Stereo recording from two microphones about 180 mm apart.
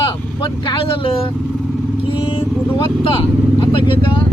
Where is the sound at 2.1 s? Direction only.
30° left (ahead or behind).